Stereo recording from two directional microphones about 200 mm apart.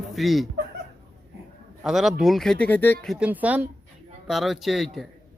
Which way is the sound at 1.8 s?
Centre (ahead or behind).